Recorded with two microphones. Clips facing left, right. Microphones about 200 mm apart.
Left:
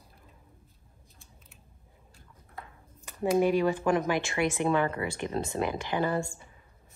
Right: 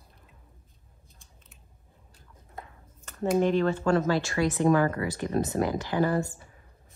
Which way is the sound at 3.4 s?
10° left (ahead or behind).